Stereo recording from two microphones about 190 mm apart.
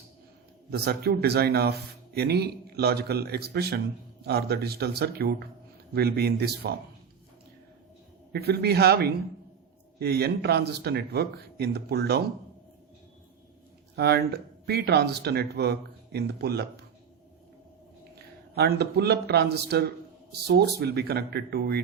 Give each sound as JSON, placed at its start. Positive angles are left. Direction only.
{"t": 0.7, "sound": "speech", "side_deg": -55}
{"t": 8.3, "sound": "speech", "side_deg": -55}
{"t": 13.9, "sound": "speech", "side_deg": -55}
{"t": 18.5, "sound": "speech", "side_deg": -60}